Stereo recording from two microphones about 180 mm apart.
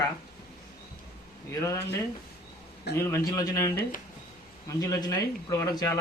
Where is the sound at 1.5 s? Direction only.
20° left (ahead or behind).